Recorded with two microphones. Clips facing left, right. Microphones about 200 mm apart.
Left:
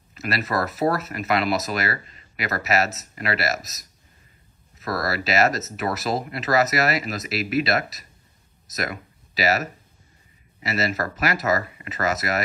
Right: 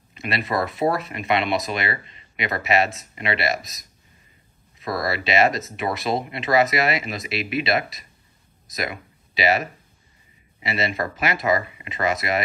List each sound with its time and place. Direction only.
0.5 s speech: 20° right (ahead or behind)
0.9 s speech: centre (ahead or behind)
5.0 s speech: centre (ahead or behind)